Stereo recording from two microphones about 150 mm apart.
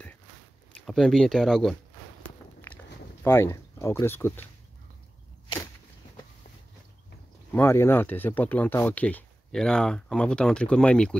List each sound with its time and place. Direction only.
0.7 s speech: centre (ahead or behind)
3.3 s speech: 15° left (ahead or behind)
7.5 s speech: 15° left (ahead or behind)